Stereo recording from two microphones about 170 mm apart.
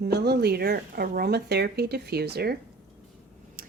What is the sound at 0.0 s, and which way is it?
Speech, 75° right (ahead or behind).